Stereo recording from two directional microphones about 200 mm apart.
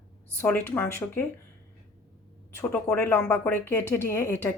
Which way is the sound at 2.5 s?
10° left (ahead or behind).